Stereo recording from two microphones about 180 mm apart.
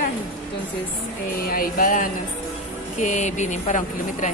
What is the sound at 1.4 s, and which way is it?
Speech, 55° left (ahead or behind).